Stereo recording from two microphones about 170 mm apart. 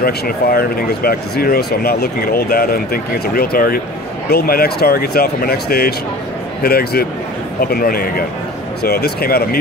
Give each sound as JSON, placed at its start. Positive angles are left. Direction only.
{"t": 0.0, "sound": "speech", "side_deg": 60}